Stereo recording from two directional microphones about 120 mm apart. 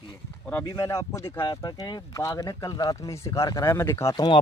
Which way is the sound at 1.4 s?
35° left (ahead or behind).